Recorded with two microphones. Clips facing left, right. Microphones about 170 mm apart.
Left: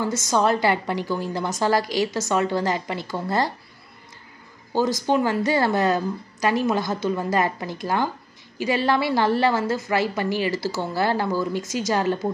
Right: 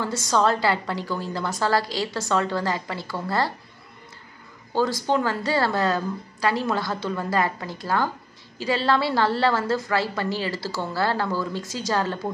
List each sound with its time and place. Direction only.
0.3 s a woman's voice: 15° left (ahead or behind)
5.0 s a woman's voice: 15° left (ahead or behind)